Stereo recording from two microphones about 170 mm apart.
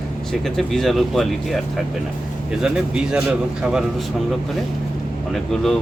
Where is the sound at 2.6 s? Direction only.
5° right (ahead or behind).